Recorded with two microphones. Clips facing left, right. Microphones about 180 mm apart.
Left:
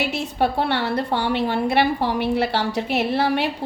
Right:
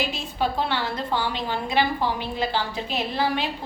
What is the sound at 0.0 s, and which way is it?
A woman's voice, 70° left (ahead or behind).